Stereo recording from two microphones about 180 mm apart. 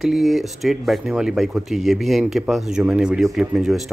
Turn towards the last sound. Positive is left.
turn(degrees=0)  # may be behind; listen again after turning